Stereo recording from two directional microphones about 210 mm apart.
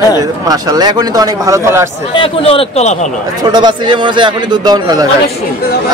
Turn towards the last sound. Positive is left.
turn(degrees=-20)  # may be behind; listen again after turning